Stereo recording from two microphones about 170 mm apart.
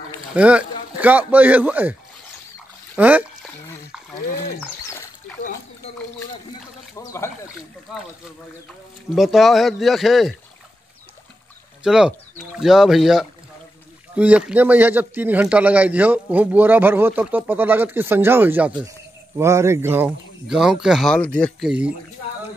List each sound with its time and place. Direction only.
0.4 s a man's voice: 5° right (ahead or behind)
3.0 s a man's voice: 10° right (ahead or behind)
4.6 s dog: 15° left (ahead or behind)
7.0 s a sound: 15° left (ahead or behind)
7.4 s speech: 5° right (ahead or behind)
9.1 s speech: centre (ahead or behind)
11.8 s a man's voice: 5° right (ahead or behind)